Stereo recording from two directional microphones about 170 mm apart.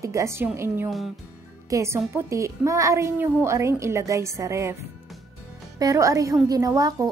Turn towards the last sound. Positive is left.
turn(degrees=-20)  # may be behind; listen again after turning